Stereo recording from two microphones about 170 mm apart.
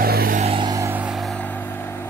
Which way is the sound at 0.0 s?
60° right (ahead or behind).